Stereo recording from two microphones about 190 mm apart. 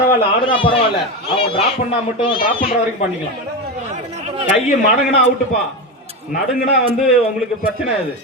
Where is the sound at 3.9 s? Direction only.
35° right (ahead or behind).